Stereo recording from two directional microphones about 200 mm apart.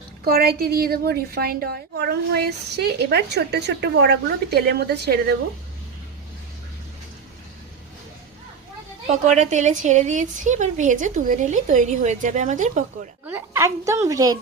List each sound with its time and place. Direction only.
0.3 s a woman's voice: 50° right (ahead or behind)
9.3 s a woman's voice: 35° right (ahead or behind)
13.2 s a child's voice: 10° right (ahead or behind)